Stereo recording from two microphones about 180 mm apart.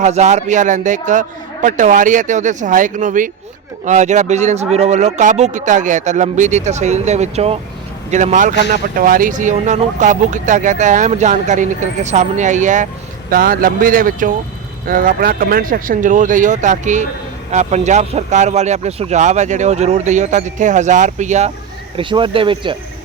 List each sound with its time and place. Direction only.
0.0 s speech: 40° right (ahead or behind)
21.9 s speech: 30° right (ahead or behind)